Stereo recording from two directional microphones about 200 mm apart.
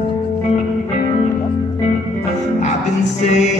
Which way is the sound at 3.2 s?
35° left (ahead or behind).